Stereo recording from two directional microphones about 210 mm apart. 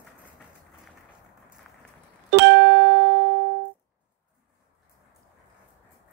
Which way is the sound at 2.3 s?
55° right (ahead or behind).